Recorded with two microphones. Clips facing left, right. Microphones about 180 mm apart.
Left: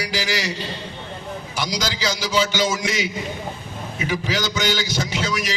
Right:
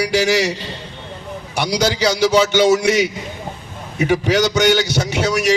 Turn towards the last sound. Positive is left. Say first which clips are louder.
# right 8 dB
turn(degrees=-65)  # may be behind; listen again after turning